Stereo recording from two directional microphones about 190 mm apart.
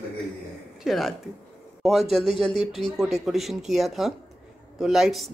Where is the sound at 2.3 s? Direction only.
25° left (ahead or behind).